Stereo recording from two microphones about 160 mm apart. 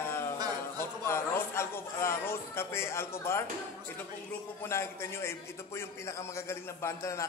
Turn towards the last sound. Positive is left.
turn(degrees=15)  # may be behind; listen again after turning